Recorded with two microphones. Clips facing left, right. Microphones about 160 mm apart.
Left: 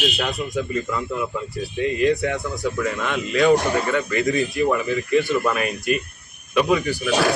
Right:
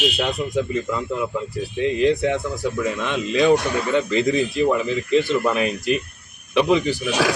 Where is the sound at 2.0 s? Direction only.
25° right (ahead or behind).